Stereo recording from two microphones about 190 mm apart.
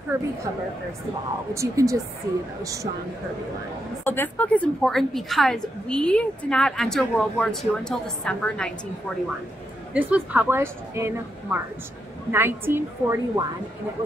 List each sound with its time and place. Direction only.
0.1 s a woman's voice: 15° right (ahead or behind)
1.5 s a woman's voice: 15° right (ahead or behind)
4.0 s a woman's voice: 10° left (ahead or behind)
9.9 s a woman's voice: 10° right (ahead or behind)